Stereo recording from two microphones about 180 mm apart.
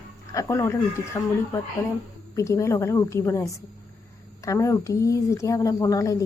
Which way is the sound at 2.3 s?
15° left (ahead or behind).